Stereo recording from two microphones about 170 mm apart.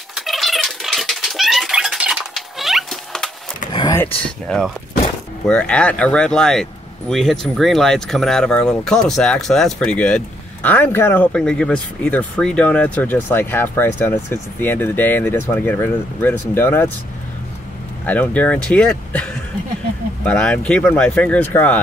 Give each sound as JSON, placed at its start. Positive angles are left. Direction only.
{"t": 0.1, "sound": "cat", "side_deg": 0}
{"t": 3.7, "sound": "a sound", "side_deg": 25}
{"t": 4.5, "sound": "speech", "side_deg": 0}
{"t": 18.0, "sound": "speech", "side_deg": 10}